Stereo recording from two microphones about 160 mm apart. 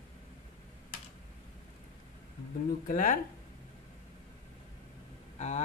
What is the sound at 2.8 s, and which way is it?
Speech, 60° left (ahead or behind).